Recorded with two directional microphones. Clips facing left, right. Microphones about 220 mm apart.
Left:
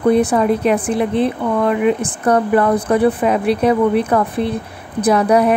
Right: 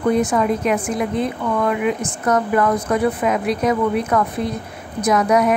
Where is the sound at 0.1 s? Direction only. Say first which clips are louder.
Left 3 dB; 35° left (ahead or behind).